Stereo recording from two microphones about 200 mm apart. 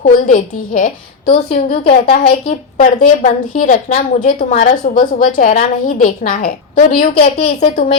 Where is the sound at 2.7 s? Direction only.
45° left (ahead or behind).